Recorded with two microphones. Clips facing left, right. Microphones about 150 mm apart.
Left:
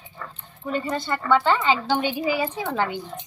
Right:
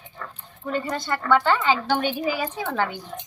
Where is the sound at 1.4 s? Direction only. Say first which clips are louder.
Even; 15° left (ahead or behind).